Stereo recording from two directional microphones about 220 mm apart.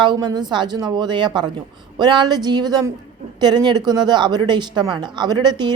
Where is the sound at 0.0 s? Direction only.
20° right (ahead or behind).